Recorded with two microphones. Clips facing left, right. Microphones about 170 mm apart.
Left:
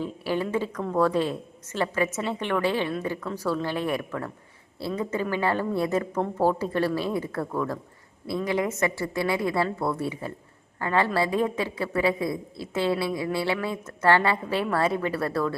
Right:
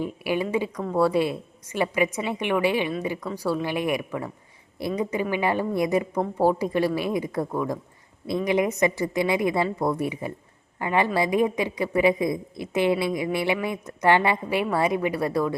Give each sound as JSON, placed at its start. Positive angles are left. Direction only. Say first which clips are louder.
{"t": 0.0, "sound": "a woman's voice", "louder": "right 2 dB", "side_deg": -15}